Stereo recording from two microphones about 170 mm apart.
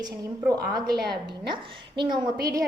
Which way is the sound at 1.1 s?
25° right (ahead or behind).